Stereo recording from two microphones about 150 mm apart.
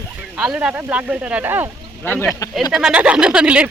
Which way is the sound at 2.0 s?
15° left (ahead or behind).